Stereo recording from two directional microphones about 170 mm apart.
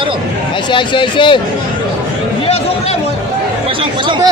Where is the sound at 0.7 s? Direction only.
30° left (ahead or behind).